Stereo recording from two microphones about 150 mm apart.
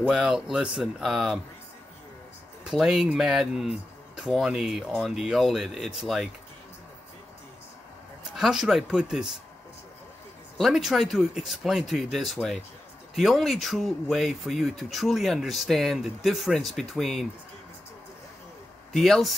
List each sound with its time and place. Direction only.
0.0 s speech: 5° right (ahead or behind)
2.6 s speech: 5° right (ahead or behind)
8.3 s speech: 5° right (ahead or behind)
10.6 s speech: centre (ahead or behind)
18.9 s a man's voice: centre (ahead or behind)